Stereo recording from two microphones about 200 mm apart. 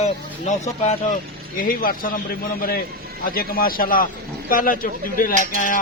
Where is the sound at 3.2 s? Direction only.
45° left (ahead or behind).